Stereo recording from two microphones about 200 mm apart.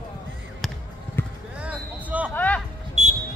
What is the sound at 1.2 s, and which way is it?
Music, 10° left (ahead or behind).